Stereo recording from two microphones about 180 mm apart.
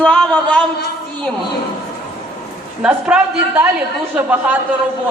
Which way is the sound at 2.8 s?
5° right (ahead or behind).